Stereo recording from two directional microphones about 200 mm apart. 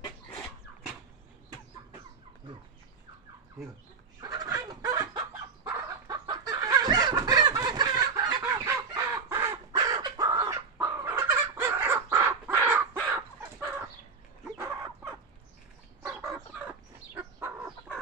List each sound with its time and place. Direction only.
4.2 s fowl: 15° right (ahead or behind)
16.1 s chicken: 5° right (ahead or behind)